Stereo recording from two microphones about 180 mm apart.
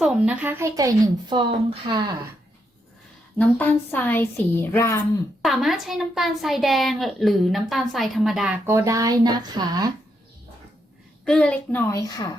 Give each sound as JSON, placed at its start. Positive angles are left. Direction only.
{"t": 0.0, "sound": "a woman's voice", "side_deg": -5}
{"t": 3.3, "sound": "a woman's voice", "side_deg": 10}
{"t": 5.4, "sound": "a woman's voice", "side_deg": 0}
{"t": 8.6, "sound": "a woman's voice", "side_deg": -15}
{"t": 11.3, "sound": "a woman's voice", "side_deg": 5}